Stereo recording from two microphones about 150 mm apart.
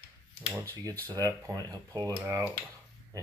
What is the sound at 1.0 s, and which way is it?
Speech, 20° right (ahead or behind).